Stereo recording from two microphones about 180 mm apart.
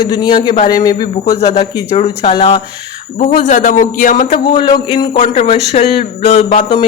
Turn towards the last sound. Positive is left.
turn(degrees=35)  # may be behind; listen again after turning